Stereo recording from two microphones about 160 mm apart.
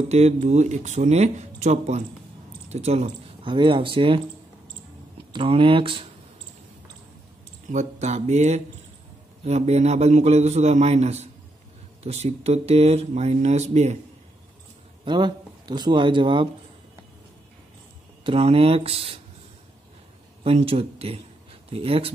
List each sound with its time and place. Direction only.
0.1 s speech: 45° right (ahead or behind)
3.4 s speech: 30° right (ahead or behind)
5.3 s speech: 35° right (ahead or behind)
7.6 s speech: 45° right (ahead or behind)
15.0 s speech: 30° right (ahead or behind)
18.2 s speech: 35° right (ahead or behind)
20.4 s speech: 40° right (ahead or behind)